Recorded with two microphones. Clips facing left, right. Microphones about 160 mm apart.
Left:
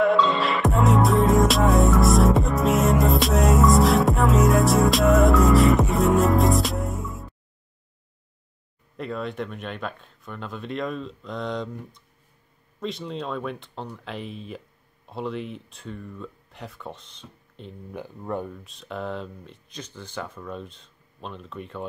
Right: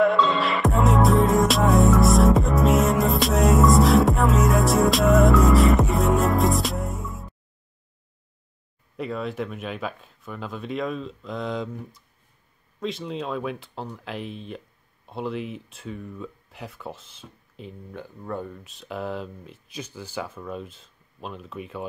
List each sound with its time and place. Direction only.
0.0 s music: centre (ahead or behind)
8.9 s speech: centre (ahead or behind)
17.9 s speech: 20° left (ahead or behind)
18.6 s speech: centre (ahead or behind)